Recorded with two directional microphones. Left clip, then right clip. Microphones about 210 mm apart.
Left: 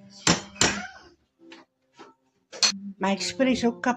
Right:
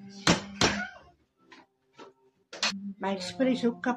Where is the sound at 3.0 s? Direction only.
45° left (ahead or behind).